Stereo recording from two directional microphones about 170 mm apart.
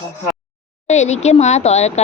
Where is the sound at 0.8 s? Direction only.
40° left (ahead or behind).